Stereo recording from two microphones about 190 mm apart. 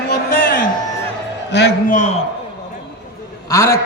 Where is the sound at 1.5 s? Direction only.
65° left (ahead or behind).